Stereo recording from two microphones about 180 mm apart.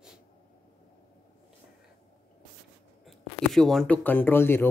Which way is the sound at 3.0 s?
Centre (ahead or behind).